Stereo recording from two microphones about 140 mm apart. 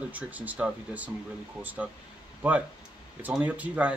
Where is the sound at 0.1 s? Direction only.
10° right (ahead or behind).